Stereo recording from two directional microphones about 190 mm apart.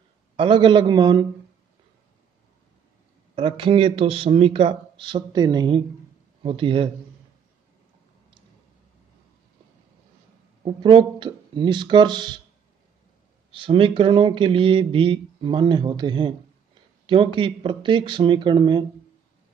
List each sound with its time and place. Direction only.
0.4 s speech: 25° right (ahead or behind)
3.3 s speech: 30° right (ahead or behind)
10.6 s speech: 25° right (ahead or behind)
13.5 s speech: 30° right (ahead or behind)